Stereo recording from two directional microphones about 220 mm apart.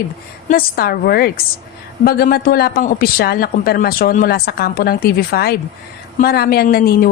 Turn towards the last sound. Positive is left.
turn(degrees=45)  # may be behind; listen again after turning